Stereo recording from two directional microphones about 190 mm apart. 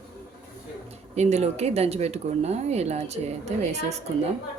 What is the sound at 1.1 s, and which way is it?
Speech, 35° right (ahead or behind).